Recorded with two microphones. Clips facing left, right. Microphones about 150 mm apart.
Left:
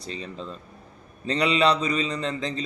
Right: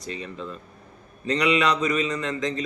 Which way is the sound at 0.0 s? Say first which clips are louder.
Right 1 dB; 30° left (ahead or behind).